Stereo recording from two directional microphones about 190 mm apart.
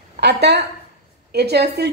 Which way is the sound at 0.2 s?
60° right (ahead or behind).